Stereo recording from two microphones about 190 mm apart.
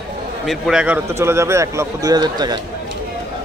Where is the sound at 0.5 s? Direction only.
5° right (ahead or behind); by 2.6 s 20° right (ahead or behind).